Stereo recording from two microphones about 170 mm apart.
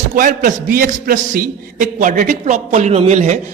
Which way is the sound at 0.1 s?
50° right (ahead or behind).